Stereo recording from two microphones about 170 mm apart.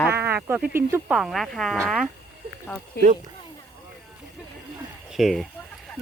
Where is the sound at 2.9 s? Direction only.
70° left (ahead or behind).